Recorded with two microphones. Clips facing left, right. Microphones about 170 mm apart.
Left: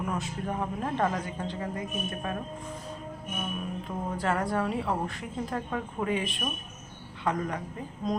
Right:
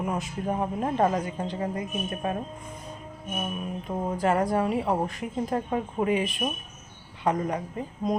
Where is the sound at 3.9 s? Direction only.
30° right (ahead or behind).